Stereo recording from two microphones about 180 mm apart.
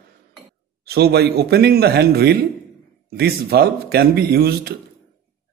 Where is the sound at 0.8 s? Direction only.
65° right (ahead or behind).